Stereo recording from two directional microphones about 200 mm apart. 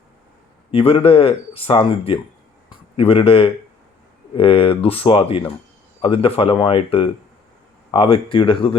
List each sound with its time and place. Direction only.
0.7 s speech: 25° left (ahead or behind)